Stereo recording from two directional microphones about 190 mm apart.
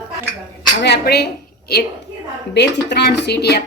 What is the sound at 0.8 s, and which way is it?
Speech, 60° left (ahead or behind).